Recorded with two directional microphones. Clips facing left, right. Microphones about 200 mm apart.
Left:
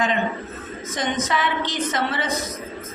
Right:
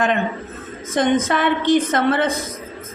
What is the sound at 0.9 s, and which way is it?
A woman's voice, 55° right (ahead or behind).